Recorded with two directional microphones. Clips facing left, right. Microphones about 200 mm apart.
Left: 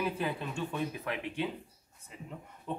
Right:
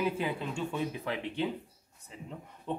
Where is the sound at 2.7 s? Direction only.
25° right (ahead or behind).